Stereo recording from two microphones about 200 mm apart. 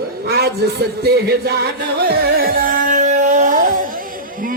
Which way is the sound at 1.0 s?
55° right (ahead or behind).